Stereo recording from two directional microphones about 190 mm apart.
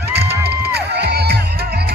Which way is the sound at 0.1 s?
60° right (ahead or behind).